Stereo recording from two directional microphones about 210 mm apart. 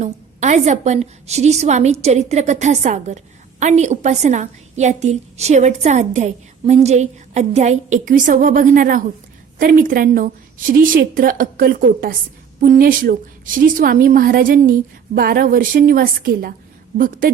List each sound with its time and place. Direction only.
0.0 s a woman's voice: 35° right (ahead or behind)